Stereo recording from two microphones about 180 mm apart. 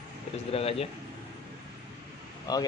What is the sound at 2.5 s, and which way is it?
Speech, 20° left (ahead or behind).